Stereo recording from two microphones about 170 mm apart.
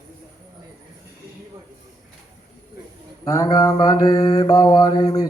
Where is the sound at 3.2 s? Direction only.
20° left (ahead or behind).